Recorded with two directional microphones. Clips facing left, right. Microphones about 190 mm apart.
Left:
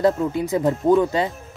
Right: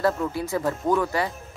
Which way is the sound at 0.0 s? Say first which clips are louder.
Left 5 dB; 20° left (ahead or behind).